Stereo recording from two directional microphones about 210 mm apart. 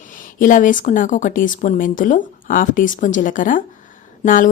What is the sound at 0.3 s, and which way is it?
A woman's voice, 40° left (ahead or behind).